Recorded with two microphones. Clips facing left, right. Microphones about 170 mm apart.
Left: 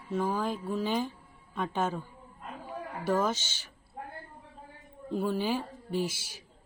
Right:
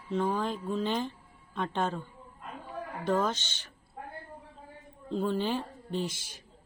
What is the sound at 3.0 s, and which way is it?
Speech, 5° left (ahead or behind).